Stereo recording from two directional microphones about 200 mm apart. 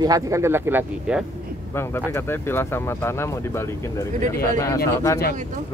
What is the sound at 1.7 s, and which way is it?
Speech, 10° left (ahead or behind).